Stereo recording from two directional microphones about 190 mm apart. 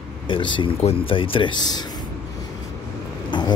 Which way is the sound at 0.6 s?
30° left (ahead or behind).